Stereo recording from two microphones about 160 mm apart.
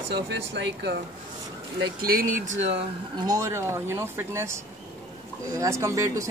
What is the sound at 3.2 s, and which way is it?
Speech, 20° right (ahead or behind).